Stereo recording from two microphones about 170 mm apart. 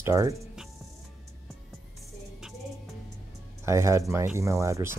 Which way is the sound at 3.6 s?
15° right (ahead or behind).